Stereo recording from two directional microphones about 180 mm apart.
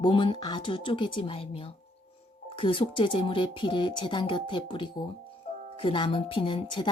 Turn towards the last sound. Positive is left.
turn(degrees=25)  # may be behind; listen again after turning